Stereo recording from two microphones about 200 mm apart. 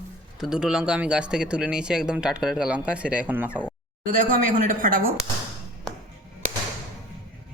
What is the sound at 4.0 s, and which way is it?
Speech, 40° right (ahead or behind).